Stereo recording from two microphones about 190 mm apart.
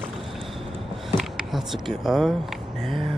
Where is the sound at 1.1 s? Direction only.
Centre (ahead or behind).